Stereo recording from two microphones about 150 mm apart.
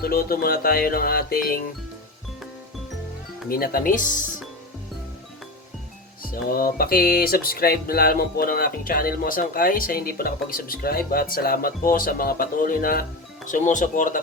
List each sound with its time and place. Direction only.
0.0 s speech: 80° left
3.5 s speech: 75° left (ahead or behind)
6.3 s speech: 75° left (ahead or behind)
13.5 s speech: 60° left (ahead or behind)